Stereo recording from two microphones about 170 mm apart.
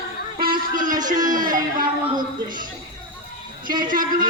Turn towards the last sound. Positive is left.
turn(degrees=-55)  # may be behind; listen again after turning